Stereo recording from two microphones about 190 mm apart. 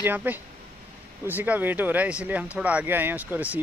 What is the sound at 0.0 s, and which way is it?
Speech, 10° right (ahead or behind).